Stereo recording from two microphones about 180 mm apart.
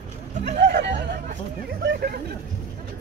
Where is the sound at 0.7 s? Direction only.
75° right (ahead or behind).